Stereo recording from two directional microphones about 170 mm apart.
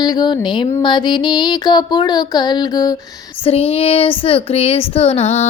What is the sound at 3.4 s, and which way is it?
Child singing, 35° left (ahead or behind).